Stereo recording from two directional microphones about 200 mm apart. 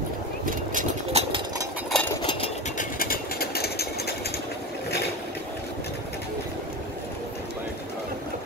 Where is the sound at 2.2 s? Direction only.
25° left (ahead or behind).